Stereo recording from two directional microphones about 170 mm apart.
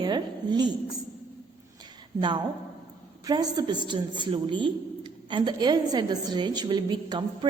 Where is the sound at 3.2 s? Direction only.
20° right (ahead or behind).